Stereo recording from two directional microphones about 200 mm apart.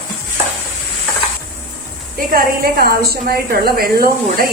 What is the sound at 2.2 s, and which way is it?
A woman's voice, 50° right (ahead or behind).